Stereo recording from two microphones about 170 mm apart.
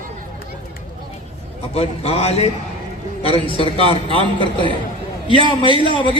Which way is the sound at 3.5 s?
35° left (ahead or behind).